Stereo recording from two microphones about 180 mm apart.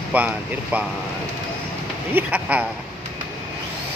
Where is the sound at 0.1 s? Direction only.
10° right (ahead or behind).